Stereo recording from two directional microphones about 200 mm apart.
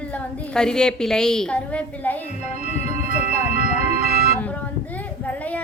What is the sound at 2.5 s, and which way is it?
Music, 45° right (ahead or behind).